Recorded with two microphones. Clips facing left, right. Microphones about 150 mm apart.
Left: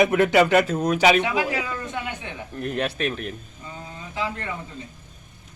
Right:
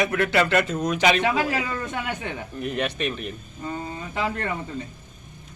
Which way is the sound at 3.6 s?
60° right (ahead or behind).